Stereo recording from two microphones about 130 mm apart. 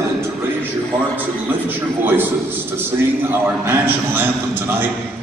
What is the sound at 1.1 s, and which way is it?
A man's voice, 15° right (ahead or behind).